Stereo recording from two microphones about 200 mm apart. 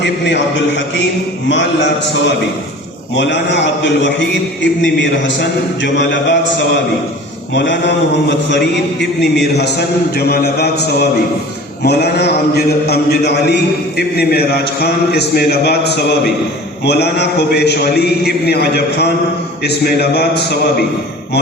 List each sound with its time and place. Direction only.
0.0 s a man's voice: 60° left (ahead or behind)
7.5 s a man's voice: 60° left (ahead or behind)